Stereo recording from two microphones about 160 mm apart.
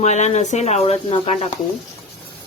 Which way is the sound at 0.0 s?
45° left (ahead or behind).